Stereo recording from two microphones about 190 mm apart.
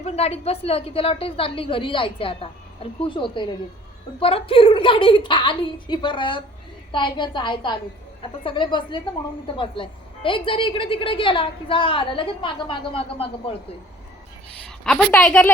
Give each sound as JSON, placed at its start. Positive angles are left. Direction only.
{"t": 0.0, "sound": "a woman's voice", "side_deg": 35}
{"t": 14.8, "sound": "a woman's voice", "side_deg": 5}